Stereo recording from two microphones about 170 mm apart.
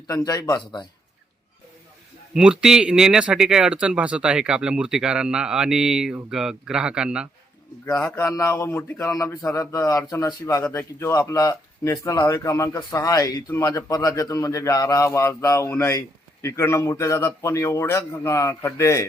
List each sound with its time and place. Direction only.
0.1 s speech: 25° left (ahead or behind)
2.3 s speech: 5° right (ahead or behind)
8.4 s speech: 15° left (ahead or behind)